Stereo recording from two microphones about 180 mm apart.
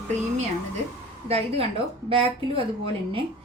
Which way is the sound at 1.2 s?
35° right (ahead or behind).